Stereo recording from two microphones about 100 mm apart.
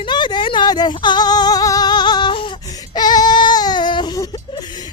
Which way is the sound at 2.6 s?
40° left (ahead or behind).